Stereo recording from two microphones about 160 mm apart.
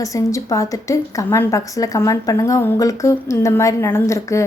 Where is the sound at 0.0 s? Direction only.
20° left (ahead or behind).